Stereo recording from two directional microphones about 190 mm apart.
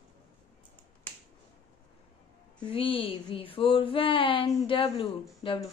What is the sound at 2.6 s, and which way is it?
Speech, 25° left (ahead or behind).